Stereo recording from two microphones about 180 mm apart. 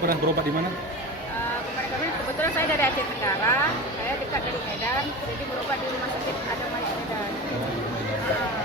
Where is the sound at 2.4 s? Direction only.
15° left (ahead or behind).